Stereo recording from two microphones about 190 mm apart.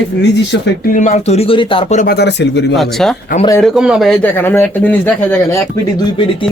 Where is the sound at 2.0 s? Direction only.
55° left (ahead or behind).